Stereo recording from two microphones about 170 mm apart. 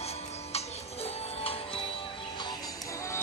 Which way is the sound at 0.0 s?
35° left (ahead or behind).